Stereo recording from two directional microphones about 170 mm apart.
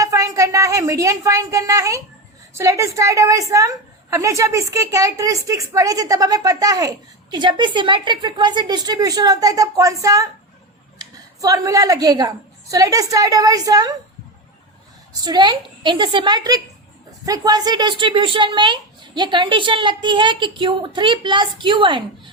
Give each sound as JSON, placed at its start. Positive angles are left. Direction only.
{"t": 0.0, "sound": "a woman's voice", "side_deg": -20}
{"t": 15.2, "sound": "a child's voice", "side_deg": -25}